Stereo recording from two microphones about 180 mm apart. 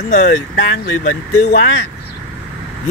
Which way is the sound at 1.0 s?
60° left (ahead or behind).